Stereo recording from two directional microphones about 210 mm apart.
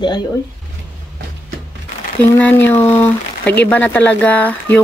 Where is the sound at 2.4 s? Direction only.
10° left (ahead or behind).